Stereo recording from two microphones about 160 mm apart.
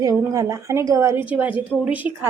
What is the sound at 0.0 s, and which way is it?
A woman's voice, 20° right (ahead or behind).